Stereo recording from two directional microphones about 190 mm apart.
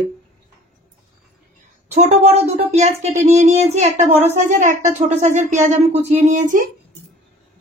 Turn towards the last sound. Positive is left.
turn(degrees=-40)  # may be behind; listen again after turning